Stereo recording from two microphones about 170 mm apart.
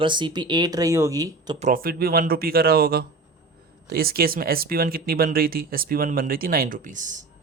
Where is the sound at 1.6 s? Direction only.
55° right (ahead or behind).